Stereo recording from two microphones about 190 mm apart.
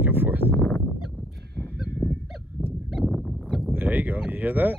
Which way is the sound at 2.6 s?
Centre (ahead or behind).